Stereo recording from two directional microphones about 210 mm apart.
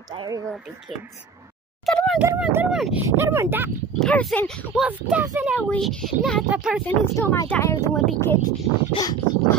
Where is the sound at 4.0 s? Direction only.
5° left (ahead or behind).